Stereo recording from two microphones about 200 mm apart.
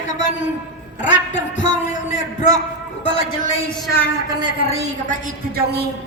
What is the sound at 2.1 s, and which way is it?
Speech, 20° right (ahead or behind).